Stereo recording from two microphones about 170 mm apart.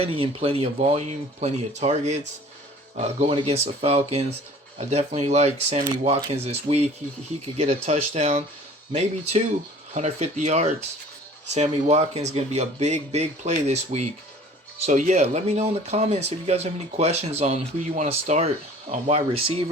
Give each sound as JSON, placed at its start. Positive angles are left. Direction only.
{"t": 0.0, "sound": "speech", "side_deg": -35}